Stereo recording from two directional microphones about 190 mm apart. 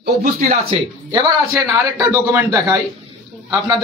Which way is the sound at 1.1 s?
15° right (ahead or behind).